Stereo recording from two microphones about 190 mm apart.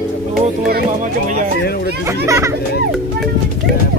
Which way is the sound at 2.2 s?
15° right (ahead or behind).